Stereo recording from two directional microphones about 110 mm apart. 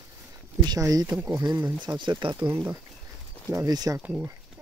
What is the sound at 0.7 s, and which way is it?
Speech, 35° right (ahead or behind).